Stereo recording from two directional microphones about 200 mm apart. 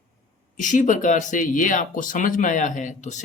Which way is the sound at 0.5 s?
40° left (ahead or behind).